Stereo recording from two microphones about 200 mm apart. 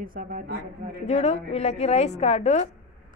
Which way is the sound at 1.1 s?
35° left (ahead or behind).